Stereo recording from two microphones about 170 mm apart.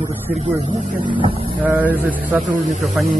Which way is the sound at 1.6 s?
10° right (ahead or behind).